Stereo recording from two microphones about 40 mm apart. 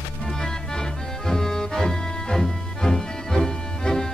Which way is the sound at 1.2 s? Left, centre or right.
Centre.